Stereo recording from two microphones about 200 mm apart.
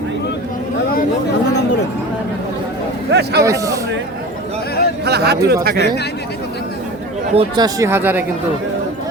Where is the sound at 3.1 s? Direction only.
55° right (ahead or behind).